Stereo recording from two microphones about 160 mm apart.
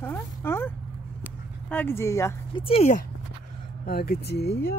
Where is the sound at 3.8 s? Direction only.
70° left (ahead or behind).